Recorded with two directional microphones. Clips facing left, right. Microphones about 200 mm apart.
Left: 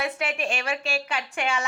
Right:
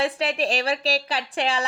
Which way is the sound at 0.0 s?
35° right (ahead or behind).